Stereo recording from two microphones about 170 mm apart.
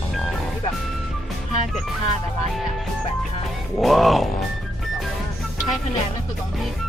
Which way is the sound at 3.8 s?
Centre (ahead or behind).